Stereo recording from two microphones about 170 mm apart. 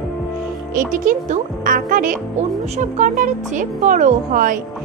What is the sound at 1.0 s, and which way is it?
Speech, 55° right (ahead or behind).